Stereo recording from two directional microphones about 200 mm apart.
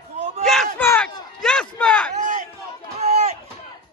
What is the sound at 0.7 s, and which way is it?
A man's voice, 10° left (ahead or behind).